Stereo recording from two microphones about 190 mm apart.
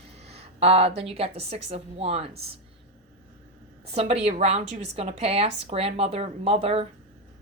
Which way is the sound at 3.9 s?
35° right (ahead or behind).